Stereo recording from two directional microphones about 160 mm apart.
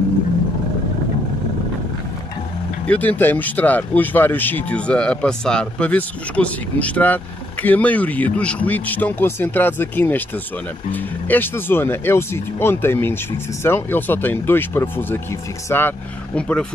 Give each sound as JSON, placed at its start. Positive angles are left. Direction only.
{"t": 2.9, "sound": "speech", "side_deg": 10}